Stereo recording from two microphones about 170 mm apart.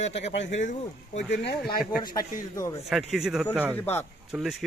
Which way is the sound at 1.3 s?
80° left.